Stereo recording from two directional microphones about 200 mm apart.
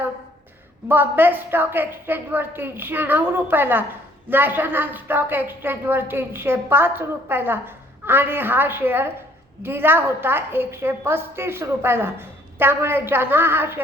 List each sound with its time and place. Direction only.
0.9 s a woman's voice: 10° right (ahead or behind)